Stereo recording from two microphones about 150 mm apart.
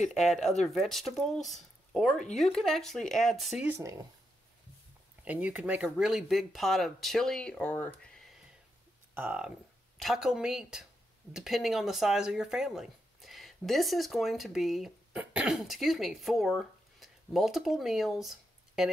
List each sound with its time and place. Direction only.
0.0 s speech: centre (ahead or behind)
3.6 s speech: 15° right (ahead or behind)
5.2 s speech: 10° right (ahead or behind); by 8.1 s 10° left (ahead or behind)
8.2 s a sound: 5° right (ahead or behind)
9.1 s speech: 10° right (ahead or behind)